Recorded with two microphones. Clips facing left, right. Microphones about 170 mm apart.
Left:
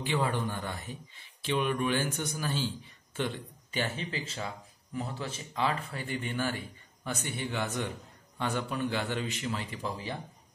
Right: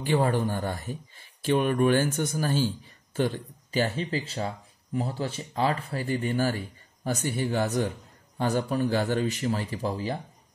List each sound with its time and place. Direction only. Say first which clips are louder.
0.0 s a man's voice: right 6 dB; 45° right (ahead or behind)